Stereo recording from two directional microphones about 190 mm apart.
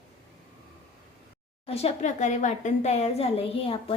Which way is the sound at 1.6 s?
30° left (ahead or behind).